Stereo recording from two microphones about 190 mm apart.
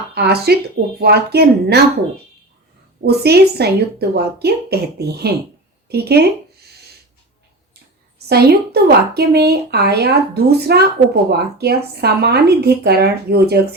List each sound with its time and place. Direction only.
0.1 s a woman's voice: 55° right (ahead or behind)
3.1 s a woman's voice: 60° right (ahead or behind)
8.3 s a woman's voice: 55° right (ahead or behind)